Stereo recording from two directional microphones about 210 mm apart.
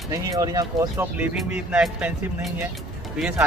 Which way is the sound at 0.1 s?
15° right (ahead or behind).